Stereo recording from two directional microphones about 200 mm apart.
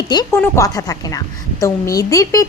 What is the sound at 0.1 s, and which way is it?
A woman's voice, 15° left (ahead or behind).